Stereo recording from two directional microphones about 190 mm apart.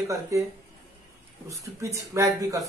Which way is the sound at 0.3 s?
15° right (ahead or behind).